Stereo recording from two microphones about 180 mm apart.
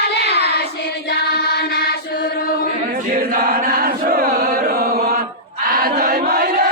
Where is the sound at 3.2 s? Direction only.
55° right (ahead or behind).